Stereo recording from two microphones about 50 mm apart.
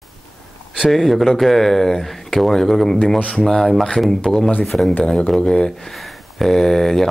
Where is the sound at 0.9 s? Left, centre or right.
Centre.